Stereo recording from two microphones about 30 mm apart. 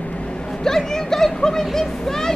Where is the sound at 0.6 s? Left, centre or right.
Centre.